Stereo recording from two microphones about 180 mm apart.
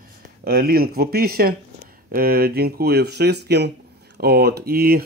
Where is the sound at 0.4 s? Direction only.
55° right (ahead or behind).